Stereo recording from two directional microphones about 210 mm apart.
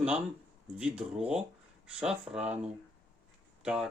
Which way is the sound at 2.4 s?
30° right (ahead or behind).